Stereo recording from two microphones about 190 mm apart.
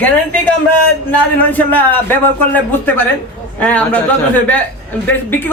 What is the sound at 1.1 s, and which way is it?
A man's voice, 10° left (ahead or behind).